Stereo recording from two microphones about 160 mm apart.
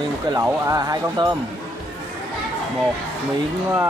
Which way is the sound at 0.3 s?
20° right (ahead or behind).